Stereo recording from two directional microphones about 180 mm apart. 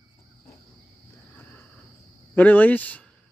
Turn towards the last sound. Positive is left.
turn(degrees=10)  # may be behind; listen again after turning